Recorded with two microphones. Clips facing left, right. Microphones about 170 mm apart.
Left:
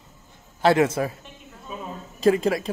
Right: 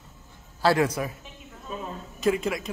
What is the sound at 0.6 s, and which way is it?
Speech, 20° left (ahead or behind).